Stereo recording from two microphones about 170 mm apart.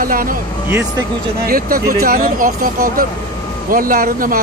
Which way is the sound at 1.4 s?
55° right (ahead or behind).